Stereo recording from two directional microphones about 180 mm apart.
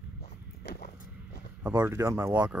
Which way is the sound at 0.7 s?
60° left (ahead or behind).